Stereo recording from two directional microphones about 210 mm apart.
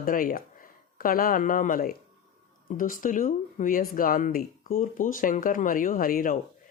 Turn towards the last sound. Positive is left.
turn(degrees=40)  # may be behind; listen again after turning